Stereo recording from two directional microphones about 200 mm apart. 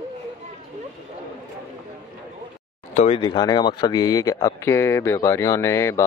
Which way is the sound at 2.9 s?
35° left (ahead or behind).